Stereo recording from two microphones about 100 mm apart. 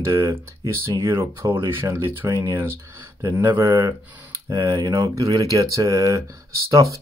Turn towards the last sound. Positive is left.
turn(degrees=-35)  # may be behind; listen again after turning